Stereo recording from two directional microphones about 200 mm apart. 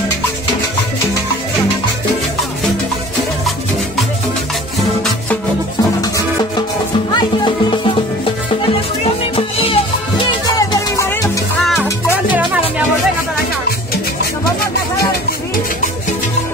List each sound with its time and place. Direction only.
7.2 s music: 20° left (ahead or behind)
9.6 s music: 25° left (ahead or behind)